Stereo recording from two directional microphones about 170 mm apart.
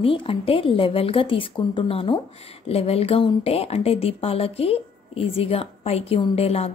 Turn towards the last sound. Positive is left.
turn(degrees=35)  # may be behind; listen again after turning